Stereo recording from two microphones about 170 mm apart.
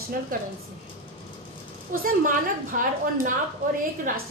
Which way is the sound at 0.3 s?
55° right (ahead or behind).